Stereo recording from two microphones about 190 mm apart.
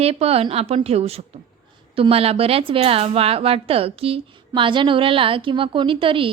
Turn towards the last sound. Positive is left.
turn(degrees=-25)  # may be behind; listen again after turning